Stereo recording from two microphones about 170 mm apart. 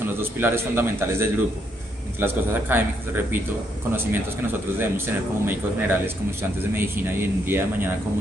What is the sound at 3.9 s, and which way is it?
A man's voice, 15° right (ahead or behind).